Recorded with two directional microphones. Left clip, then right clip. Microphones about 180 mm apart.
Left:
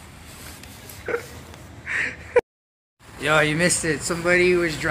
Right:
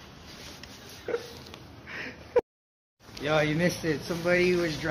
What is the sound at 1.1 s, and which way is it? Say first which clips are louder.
Speech: left 5 dB; 5° right (ahead or behind).